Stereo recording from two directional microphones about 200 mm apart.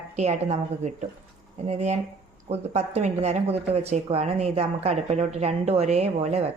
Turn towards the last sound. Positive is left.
turn(degrees=-30)  # may be behind; listen again after turning